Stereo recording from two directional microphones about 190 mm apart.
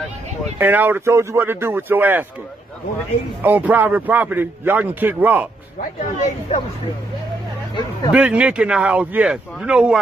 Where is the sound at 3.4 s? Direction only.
10° right (ahead or behind).